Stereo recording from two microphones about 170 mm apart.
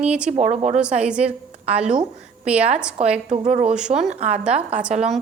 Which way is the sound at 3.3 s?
40° right (ahead or behind).